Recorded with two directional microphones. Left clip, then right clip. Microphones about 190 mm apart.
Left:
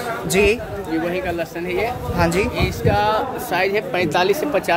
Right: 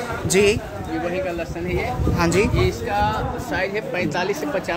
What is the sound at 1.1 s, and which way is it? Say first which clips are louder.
Speech: left 2 dB; 60° left (ahead or behind).